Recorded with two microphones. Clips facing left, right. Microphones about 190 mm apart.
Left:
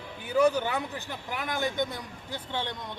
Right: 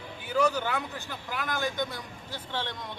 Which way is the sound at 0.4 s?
15° left (ahead or behind).